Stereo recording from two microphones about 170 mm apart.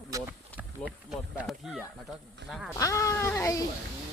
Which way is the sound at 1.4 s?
Centre (ahead or behind).